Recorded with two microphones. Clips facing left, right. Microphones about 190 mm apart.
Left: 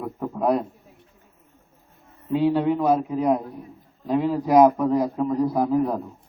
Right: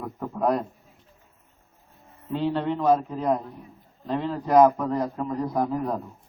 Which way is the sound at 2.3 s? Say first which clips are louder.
Left 5 dB; 10° left (ahead or behind).